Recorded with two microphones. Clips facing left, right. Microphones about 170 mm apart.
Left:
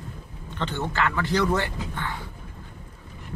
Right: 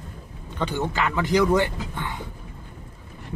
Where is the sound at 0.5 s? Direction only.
10° right (ahead or behind).